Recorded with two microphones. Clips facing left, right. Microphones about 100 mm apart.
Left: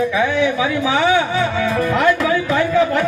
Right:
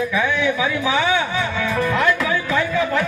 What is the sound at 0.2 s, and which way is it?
A man's voice, 30° left (ahead or behind).